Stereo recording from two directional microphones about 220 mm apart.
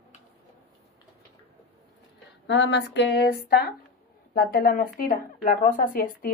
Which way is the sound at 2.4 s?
55° left (ahead or behind).